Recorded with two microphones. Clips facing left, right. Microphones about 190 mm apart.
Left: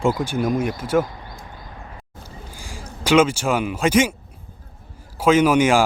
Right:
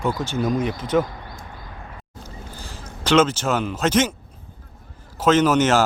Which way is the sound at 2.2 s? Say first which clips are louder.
Right 2 dB; 10° left (ahead or behind).